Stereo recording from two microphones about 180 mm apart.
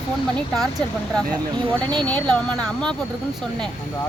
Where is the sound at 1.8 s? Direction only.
25° right (ahead or behind).